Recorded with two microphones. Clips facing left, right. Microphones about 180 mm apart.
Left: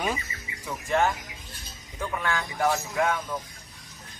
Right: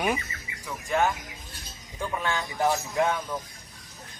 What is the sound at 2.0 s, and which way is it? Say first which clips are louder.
Speech: even; 15° right (ahead or behind).